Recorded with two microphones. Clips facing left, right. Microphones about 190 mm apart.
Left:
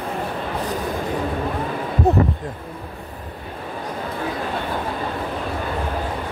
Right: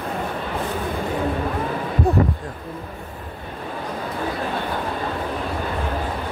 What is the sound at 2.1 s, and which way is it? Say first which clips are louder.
Speech: left 2 dB; 20° left (ahead or behind).